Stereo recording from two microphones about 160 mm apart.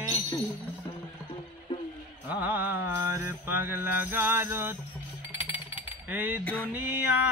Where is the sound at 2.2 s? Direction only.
10° right (ahead or behind).